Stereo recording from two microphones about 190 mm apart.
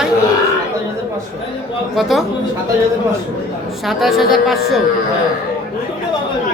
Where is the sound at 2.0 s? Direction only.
Centre (ahead or behind).